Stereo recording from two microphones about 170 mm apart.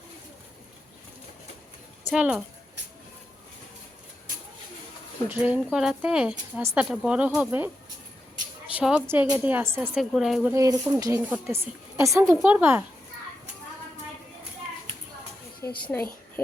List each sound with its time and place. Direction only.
2.0 s a woman's voice: 10° right (ahead or behind)
5.3 s a woman's voice: 10° right (ahead or behind)
8.7 s a woman's voice: 5° right (ahead or behind)
10.5 s a woman's voice: 20° right (ahead or behind)
15.6 s a woman's voice: 15° left (ahead or behind)